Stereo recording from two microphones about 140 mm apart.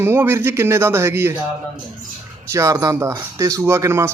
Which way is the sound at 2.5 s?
20° right (ahead or behind).